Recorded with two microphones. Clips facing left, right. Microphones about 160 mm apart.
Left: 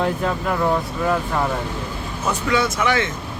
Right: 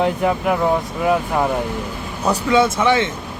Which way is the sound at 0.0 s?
15° right (ahead or behind).